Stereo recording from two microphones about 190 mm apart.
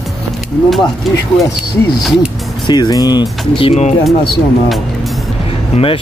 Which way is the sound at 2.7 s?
20° left (ahead or behind).